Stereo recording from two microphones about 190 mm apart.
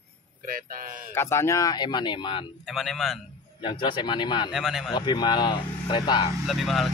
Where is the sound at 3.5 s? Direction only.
25° left (ahead or behind).